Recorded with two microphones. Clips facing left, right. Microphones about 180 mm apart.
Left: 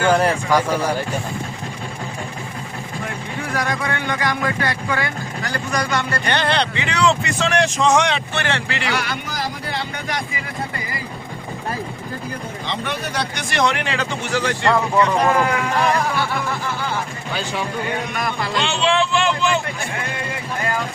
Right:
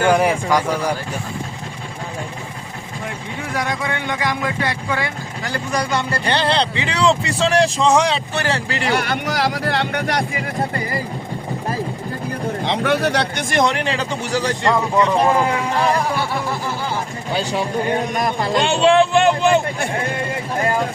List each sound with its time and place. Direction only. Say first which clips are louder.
0.0 s speech: right 1 dB; 10° right (ahead or behind)
3.5 s speech: even; 20° right (ahead or behind); by 9.1 s 50° right (ahead or behind)
9.2 s speech: right 7 dB; 80° right; by 11.0 s 50° right (ahead or behind)
12.6 s a man's voice: right 9 dB; 80° right; by 14.5 s 35° right (ahead or behind)
14.6 s speech: even; 20° right (ahead or behind)
17.3 s speech: right 4 dB; 35° right (ahead or behind); by 19.9 s 55° right (ahead or behind)